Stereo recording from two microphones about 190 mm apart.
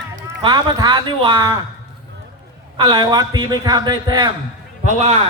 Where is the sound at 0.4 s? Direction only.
20° right (ahead or behind).